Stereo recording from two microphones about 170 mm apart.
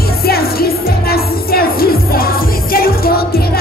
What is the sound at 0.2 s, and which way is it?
Music, 65° left (ahead or behind).